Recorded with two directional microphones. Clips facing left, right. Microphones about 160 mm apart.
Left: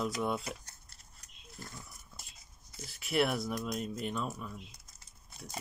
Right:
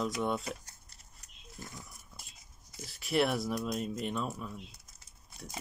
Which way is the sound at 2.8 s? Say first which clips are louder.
Right 1 dB; centre (ahead or behind).